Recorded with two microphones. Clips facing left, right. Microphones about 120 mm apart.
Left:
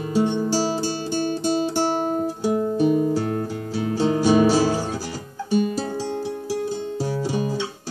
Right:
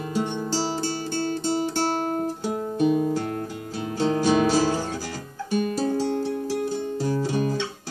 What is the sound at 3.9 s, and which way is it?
Music, 15° left (ahead or behind).